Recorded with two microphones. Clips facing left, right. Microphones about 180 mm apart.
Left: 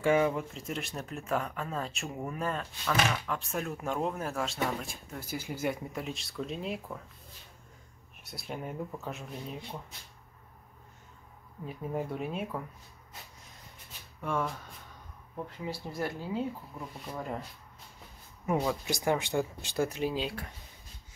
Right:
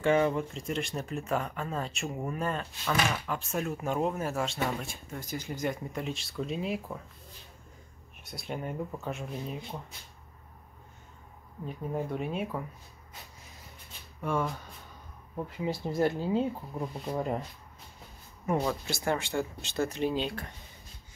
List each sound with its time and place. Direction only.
0.0 s speech: 5° left (ahead or behind)
8.2 s speech: centre (ahead or behind)
11.6 s speech: 5° left (ahead or behind)
14.2 s speech: centre (ahead or behind)
15.6 s speech: 20° right (ahead or behind)
18.5 s speech: 5° left (ahead or behind)
18.9 s speech: 15° left (ahead or behind)